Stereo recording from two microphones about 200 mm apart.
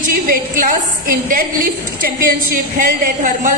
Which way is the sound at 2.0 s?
45° right (ahead or behind).